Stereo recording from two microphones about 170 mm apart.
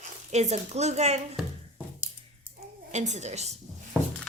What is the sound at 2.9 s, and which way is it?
Speech, 45° right (ahead or behind).